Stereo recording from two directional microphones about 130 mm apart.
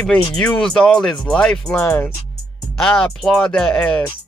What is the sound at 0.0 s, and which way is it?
Speech, 5° left (ahead or behind).